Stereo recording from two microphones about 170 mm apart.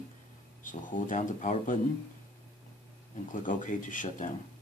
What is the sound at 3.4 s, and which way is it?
Speech, 50° left (ahead or behind).